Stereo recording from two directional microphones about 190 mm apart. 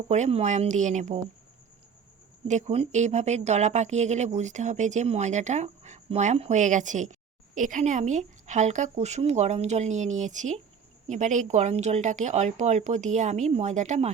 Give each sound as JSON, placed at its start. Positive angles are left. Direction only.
{"t": 0.1, "sound": "speech", "side_deg": -35}
{"t": 2.5, "sound": "speech", "side_deg": -35}